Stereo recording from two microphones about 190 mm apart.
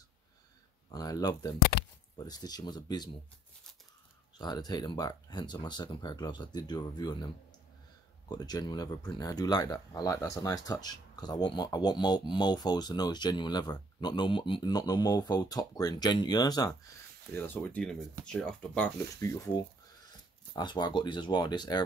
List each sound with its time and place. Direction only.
0.9 s speech: 20° left (ahead or behind)
1.6 s a sound: 55° left (ahead or behind)
2.1 s speech: 20° left (ahead or behind)
4.4 s speech: 20° left (ahead or behind)
8.3 s speech: 20° left (ahead or behind)
17.5 s speech: 10° left (ahead or behind)
19.1 s speech: 15° left (ahead or behind)